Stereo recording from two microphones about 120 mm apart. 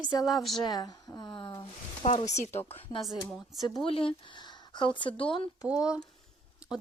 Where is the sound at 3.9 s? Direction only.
50° left (ahead or behind).